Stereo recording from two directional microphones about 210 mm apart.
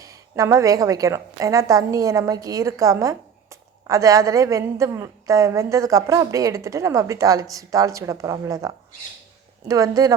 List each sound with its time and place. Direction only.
0.0 s a woman's voice: 15° right (ahead or behind)